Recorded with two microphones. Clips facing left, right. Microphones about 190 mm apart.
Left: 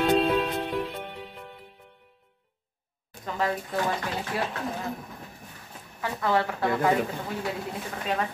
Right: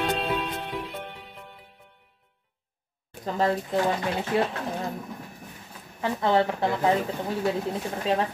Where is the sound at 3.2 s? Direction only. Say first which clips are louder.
Right 4 dB; 30° right (ahead or behind).